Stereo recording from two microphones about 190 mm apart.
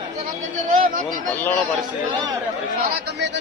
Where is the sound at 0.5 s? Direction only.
45° right (ahead or behind).